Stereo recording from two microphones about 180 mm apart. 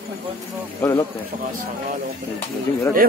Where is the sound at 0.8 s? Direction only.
15° left (ahead or behind).